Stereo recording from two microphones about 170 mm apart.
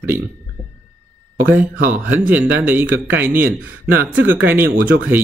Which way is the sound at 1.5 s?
10° right (ahead or behind).